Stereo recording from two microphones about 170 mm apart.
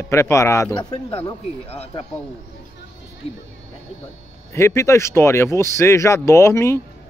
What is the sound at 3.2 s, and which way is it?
Speech, 35° left (ahead or behind).